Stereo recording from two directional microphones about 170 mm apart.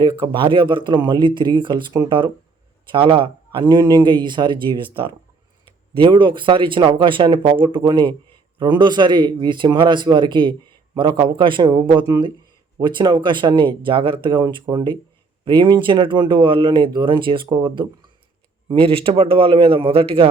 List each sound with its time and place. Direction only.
0.0 s a man's voice: 30° right (ahead or behind)